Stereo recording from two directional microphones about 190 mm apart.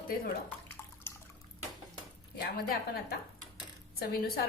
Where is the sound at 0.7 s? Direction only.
10° left (ahead or behind).